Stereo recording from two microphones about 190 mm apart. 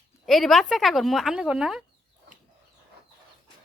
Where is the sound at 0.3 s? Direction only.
Centre (ahead or behind).